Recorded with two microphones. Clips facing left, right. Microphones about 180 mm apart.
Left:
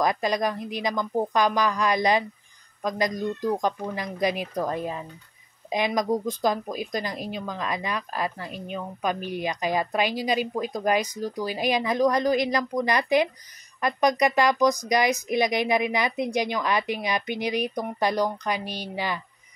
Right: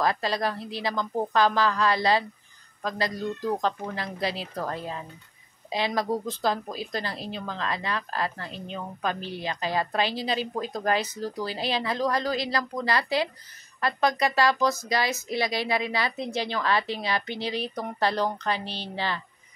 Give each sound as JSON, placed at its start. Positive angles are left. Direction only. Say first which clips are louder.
{"t": 0.0, "sound": "speech", "louder": "left 2 dB", "side_deg": 15}